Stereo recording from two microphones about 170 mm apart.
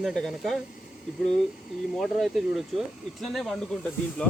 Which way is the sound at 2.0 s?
Centre (ahead or behind).